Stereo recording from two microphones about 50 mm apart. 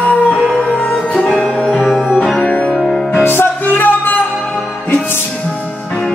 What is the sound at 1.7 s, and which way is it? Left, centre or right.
Music, centre.